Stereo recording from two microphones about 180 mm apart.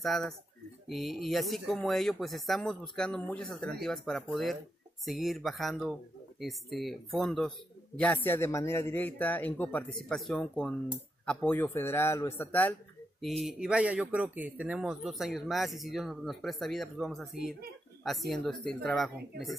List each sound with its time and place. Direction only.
0.0 s a man's voice: centre (ahead or behind)
13.4 s a man's voice: 5° right (ahead or behind)